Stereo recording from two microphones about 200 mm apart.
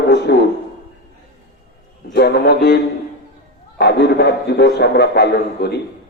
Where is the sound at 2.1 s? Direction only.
55° left (ahead or behind).